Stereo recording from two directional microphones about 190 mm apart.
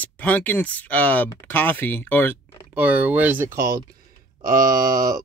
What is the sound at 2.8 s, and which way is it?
Speech, 10° right (ahead or behind).